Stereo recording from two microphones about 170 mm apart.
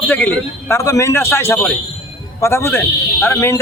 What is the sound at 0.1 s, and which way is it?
A man's voice, 10° left (ahead or behind).